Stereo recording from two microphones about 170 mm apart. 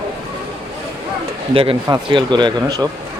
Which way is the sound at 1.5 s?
35° right (ahead or behind).